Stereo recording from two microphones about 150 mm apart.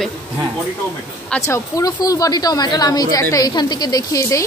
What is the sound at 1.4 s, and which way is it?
A woman's voice, 20° left (ahead or behind).